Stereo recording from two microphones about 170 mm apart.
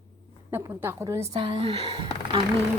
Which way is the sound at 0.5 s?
15° right (ahead or behind).